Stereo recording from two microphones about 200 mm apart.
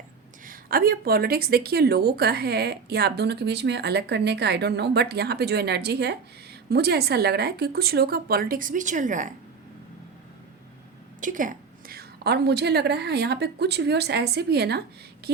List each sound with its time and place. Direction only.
0.4 s speech: 45° right (ahead or behind)
11.2 s a woman's voice: 40° right (ahead or behind)